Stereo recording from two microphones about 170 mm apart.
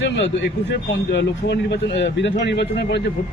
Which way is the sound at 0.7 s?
90° left.